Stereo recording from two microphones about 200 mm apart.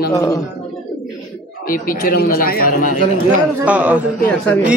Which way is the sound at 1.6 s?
45° left (ahead or behind).